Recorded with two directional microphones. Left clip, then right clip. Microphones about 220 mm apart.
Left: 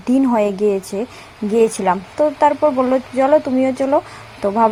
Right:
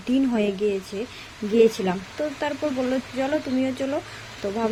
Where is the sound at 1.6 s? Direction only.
25° left (ahead or behind).